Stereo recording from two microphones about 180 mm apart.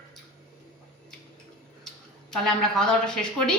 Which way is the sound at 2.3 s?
5° left (ahead or behind).